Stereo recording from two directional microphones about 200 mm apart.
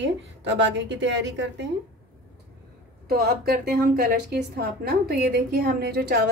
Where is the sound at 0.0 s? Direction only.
65° right (ahead or behind).